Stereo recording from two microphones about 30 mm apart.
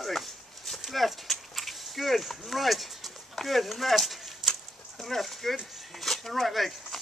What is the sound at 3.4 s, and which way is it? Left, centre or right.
Speech, centre.